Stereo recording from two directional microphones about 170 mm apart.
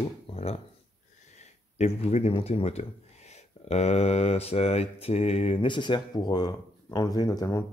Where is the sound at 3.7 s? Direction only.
40° left (ahead or behind).